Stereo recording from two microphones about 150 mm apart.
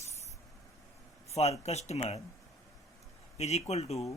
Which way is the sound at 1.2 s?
45° left (ahead or behind).